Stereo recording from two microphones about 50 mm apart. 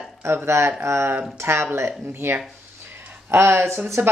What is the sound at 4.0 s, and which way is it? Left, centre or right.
Speech, right.